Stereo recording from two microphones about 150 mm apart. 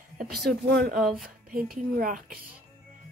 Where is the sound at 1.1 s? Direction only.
70° right (ahead or behind).